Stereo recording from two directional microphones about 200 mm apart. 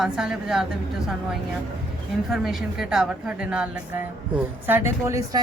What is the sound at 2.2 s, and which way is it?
A woman's voice, centre (ahead or behind).